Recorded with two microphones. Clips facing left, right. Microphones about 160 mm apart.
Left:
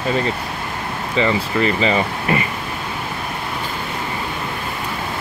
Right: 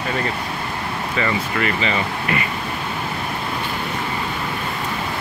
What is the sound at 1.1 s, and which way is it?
Speech, 25° left (ahead or behind).